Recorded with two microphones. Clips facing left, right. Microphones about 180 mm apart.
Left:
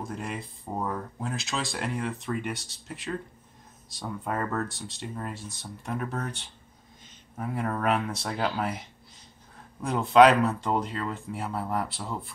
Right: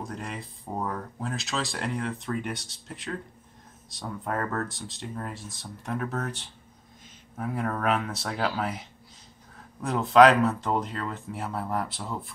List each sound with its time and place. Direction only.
0.0 s speech: centre (ahead or behind)